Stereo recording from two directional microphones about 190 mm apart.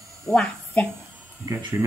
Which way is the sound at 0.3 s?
5° left (ahead or behind).